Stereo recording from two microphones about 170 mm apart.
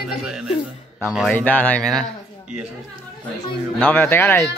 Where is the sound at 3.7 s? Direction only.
10° left (ahead or behind).